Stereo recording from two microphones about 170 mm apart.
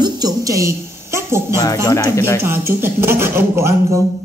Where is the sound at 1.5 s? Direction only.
20° left (ahead or behind).